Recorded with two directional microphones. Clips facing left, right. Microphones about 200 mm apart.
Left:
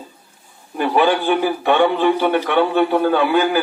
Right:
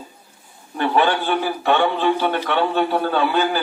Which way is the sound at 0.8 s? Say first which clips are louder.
Left 2 dB; 10° left (ahead or behind).